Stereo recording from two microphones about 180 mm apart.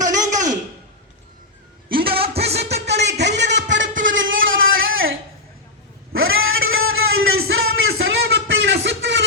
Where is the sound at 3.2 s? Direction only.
75° right (ahead or behind).